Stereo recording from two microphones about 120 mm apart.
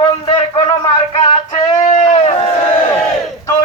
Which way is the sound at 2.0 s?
60° left (ahead or behind).